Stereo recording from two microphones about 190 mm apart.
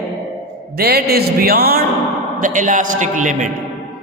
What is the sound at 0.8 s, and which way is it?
A man's voice, 55° right (ahead or behind).